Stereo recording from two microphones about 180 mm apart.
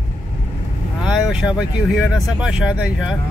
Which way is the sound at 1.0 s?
5° right (ahead or behind).